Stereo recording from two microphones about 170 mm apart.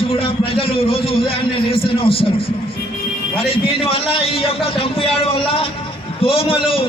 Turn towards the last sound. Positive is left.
turn(degrees=30)  # may be behind; listen again after turning